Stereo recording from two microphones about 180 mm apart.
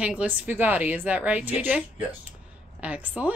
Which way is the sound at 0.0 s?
5° right (ahead or behind).